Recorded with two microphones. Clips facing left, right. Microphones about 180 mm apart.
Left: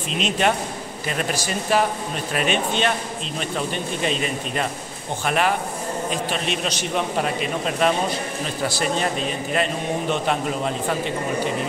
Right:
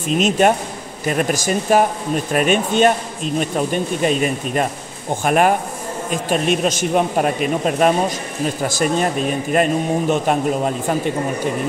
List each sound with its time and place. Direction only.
0.1 s speech: 45° right (ahead or behind)
9.5 s speech: 45° right (ahead or behind)